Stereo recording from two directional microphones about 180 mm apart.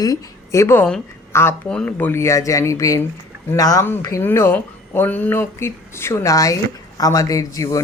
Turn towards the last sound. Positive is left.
turn(degrees=20)  # may be behind; listen again after turning